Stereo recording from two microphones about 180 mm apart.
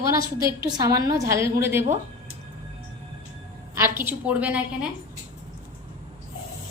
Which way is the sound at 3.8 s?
10° right (ahead or behind).